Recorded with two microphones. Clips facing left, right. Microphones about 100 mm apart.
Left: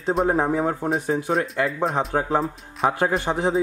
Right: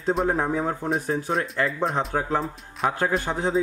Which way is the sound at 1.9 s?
15° left (ahead or behind).